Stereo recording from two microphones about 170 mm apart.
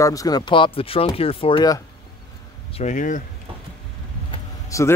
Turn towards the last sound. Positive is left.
turn(degrees=15)  # may be behind; listen again after turning